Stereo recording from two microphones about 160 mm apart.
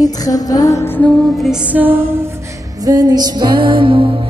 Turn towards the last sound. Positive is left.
turn(degrees=-30)  # may be behind; listen again after turning